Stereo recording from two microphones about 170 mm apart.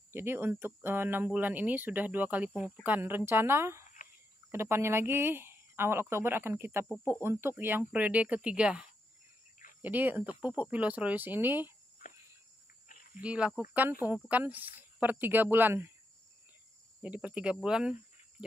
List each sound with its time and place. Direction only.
0.1 s speech: 15° right (ahead or behind)
12.8 s cricket: 50° left (ahead or behind)
13.2 s speech: 5° right (ahead or behind)
17.0 s speech: 10° right (ahead or behind)